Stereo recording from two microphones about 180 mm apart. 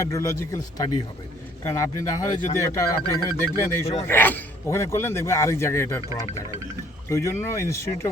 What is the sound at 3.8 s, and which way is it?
Speech, 35° left (ahead or behind).